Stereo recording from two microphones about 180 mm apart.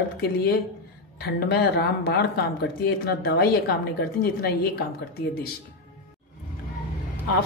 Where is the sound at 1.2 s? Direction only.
65° left (ahead or behind).